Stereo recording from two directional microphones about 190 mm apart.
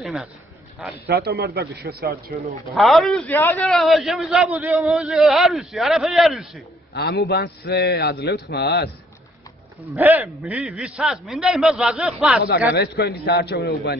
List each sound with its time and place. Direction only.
0.0 s a man's voice: centre (ahead or behind)
1.0 s speech: 55° right (ahead or behind)
2.7 s a man's voice: centre (ahead or behind)
6.9 s a man's voice: 60° left (ahead or behind)
9.9 s a man's voice: 10° right (ahead or behind)
12.7 s a man's voice: 55° left (ahead or behind)